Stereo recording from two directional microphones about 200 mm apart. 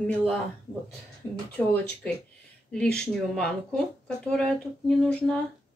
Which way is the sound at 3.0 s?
5° left (ahead or behind).